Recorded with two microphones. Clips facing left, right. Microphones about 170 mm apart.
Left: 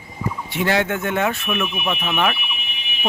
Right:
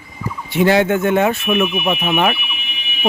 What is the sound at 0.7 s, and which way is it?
Speech, 20° right (ahead or behind).